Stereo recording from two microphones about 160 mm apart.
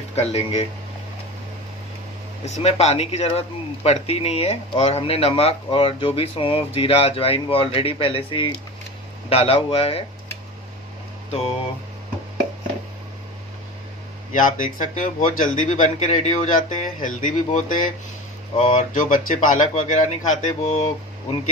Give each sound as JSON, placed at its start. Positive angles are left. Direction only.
{"t": 0.1, "sound": "speech", "side_deg": 40}
{"t": 2.4, "sound": "speech", "side_deg": 40}
{"t": 14.3, "sound": "speech", "side_deg": 55}